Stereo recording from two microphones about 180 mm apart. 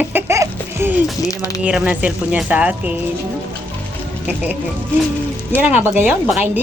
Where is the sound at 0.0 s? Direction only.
10° right (ahead or behind).